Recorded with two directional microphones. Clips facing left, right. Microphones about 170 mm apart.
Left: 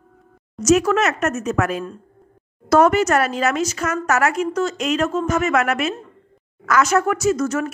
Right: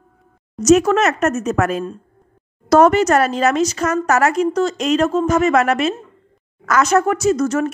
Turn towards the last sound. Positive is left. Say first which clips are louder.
# right 3 dB
turn(degrees=-35)  # may be behind; listen again after turning